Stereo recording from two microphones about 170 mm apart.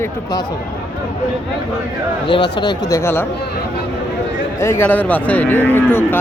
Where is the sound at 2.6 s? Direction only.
20° left (ahead or behind).